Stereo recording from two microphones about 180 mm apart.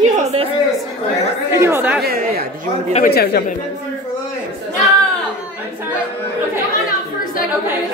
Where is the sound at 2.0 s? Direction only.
60° right (ahead or behind).